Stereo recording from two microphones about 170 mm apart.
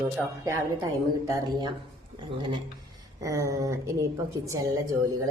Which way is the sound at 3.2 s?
20° right (ahead or behind).